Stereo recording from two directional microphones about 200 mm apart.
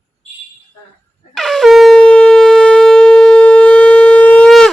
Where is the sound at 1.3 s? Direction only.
Centre (ahead or behind).